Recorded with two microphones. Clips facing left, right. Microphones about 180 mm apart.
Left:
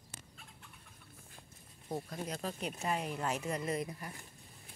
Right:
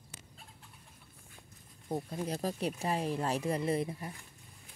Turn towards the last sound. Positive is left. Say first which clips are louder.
# right 5 dB
turn(degrees=-25)  # may be behind; listen again after turning